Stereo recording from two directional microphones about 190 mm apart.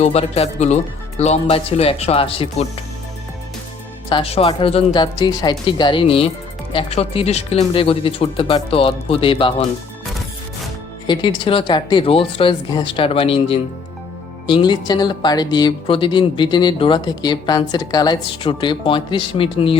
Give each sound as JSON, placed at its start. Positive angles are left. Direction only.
{"t": 0.0, "sound": "speech", "side_deg": 35}
{"t": 4.1, "sound": "speech", "side_deg": 30}
{"t": 11.0, "sound": "speech", "side_deg": 25}